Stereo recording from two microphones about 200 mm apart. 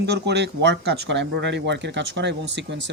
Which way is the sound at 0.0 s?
55° right (ahead or behind).